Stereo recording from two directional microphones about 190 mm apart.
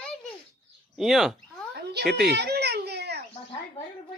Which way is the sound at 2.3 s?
60° right (ahead or behind).